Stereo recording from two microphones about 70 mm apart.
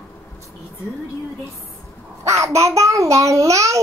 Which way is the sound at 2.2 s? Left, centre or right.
Right.